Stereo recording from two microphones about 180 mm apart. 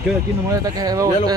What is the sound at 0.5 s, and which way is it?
Speech, 20° right (ahead or behind).